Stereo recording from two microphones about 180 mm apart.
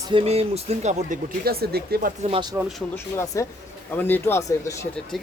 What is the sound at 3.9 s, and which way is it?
Speech, 10° left (ahead or behind).